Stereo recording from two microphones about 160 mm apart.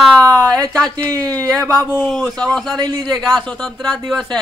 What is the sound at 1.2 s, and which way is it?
Speech, 10° left (ahead or behind).